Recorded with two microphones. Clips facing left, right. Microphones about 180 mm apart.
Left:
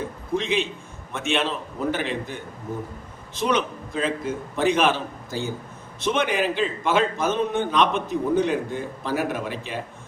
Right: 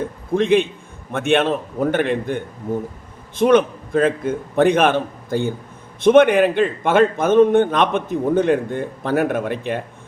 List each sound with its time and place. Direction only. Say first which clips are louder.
0.3 s a man's voice: right 8 dB; 55° right (ahead or behind)